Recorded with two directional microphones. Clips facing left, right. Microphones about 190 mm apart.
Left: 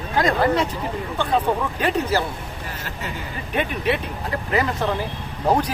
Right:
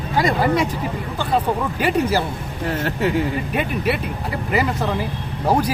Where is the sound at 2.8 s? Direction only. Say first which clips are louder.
Right 14 dB; 65° right (ahead or behind).